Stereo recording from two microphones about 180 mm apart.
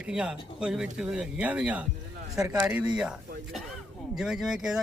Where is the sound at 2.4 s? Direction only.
20° right (ahead or behind).